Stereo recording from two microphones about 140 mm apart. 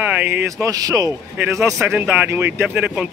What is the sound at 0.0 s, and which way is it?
Speech, 15° right (ahead or behind).